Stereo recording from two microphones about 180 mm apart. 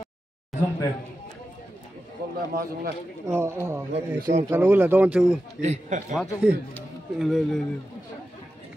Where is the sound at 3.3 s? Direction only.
15° right (ahead or behind).